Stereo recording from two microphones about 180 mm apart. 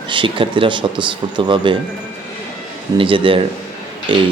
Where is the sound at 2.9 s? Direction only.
30° right (ahead or behind).